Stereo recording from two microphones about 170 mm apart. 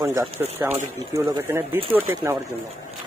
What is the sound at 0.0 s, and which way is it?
Speech, 15° right (ahead or behind).